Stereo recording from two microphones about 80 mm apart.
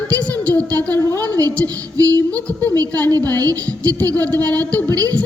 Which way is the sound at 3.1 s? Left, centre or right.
Right.